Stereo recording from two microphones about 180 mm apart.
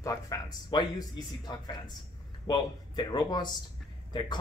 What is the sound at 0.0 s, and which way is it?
Speech, 20° left (ahead or behind).